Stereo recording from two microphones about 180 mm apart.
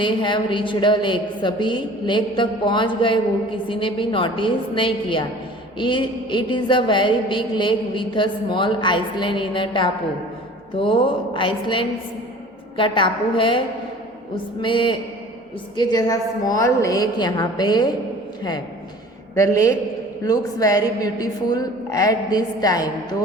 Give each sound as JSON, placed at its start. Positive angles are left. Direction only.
{"t": 0.0, "sound": "a woman's voice", "side_deg": 25}
{"t": 14.6, "sound": "a woman's voice", "side_deg": 25}
{"t": 19.4, "sound": "a man's voice", "side_deg": 20}